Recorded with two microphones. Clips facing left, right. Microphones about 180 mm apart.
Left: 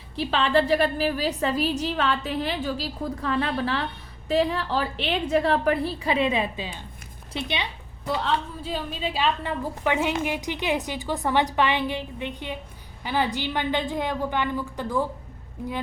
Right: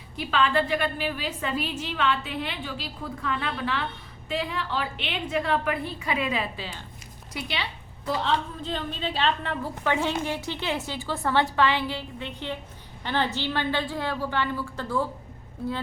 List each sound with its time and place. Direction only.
0.2 s a woman's voice: 30° left (ahead or behind)
8.0 s a woman's voice: 5° left (ahead or behind)